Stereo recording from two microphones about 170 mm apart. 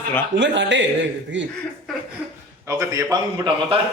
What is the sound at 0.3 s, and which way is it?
Speech, 90° right.